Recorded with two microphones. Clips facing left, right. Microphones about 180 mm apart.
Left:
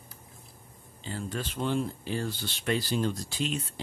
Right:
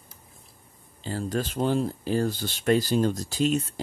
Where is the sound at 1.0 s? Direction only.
40° right (ahead or behind).